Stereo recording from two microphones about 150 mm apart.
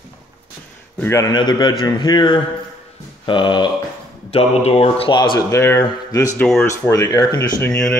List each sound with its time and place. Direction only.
0.9 s a man's voice: 15° left (ahead or behind); by 5.4 s 30° left (ahead or behind)
5.5 s a man's voice: 20° left (ahead or behind)
6.3 s speech: 5° left (ahead or behind)
6.6 s a man's voice: 20° left (ahead or behind)
7.6 s speech: 10° left (ahead or behind)